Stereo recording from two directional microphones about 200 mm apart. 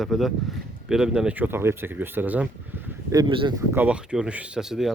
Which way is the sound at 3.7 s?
5° right (ahead or behind).